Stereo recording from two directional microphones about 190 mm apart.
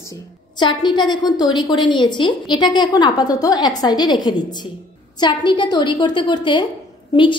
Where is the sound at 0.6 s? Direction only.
25° left (ahead or behind).